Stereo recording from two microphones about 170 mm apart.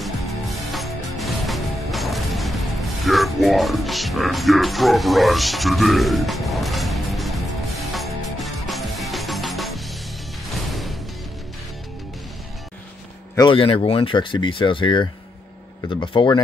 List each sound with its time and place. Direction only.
0.0 s music: centre (ahead or behind)
3.1 s speech: centre (ahead or behind)
7.9 s music: centre (ahead or behind)
13.4 s speech: 30° left (ahead or behind)